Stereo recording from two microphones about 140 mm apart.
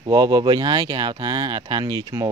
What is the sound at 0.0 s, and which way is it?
Speech, 30° right (ahead or behind).